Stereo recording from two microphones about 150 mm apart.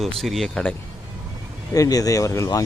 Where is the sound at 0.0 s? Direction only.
Centre (ahead or behind).